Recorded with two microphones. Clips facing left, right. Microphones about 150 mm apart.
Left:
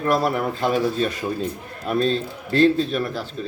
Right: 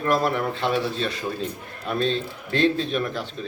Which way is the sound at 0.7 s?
45° left (ahead or behind).